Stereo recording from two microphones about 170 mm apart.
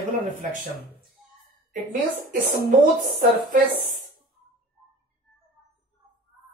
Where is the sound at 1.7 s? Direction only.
50° right (ahead or behind).